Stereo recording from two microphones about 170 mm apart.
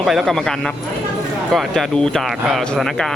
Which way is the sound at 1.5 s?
Centre (ahead or behind).